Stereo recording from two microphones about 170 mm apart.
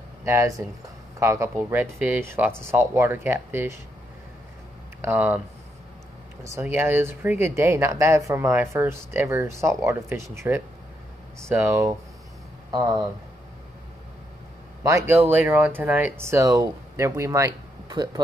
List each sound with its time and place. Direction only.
0.2 s speech: 15° right (ahead or behind)
5.0 s speech: 10° right (ahead or behind)
6.4 s speech: 15° right (ahead or behind)
14.9 s speech: 15° right (ahead or behind)